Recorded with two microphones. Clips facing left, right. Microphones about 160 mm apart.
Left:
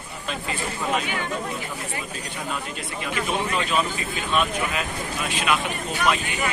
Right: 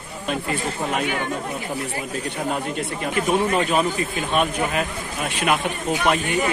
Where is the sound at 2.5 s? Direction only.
45° right (ahead or behind).